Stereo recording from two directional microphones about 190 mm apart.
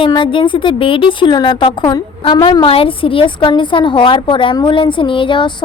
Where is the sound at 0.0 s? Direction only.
25° left (ahead or behind).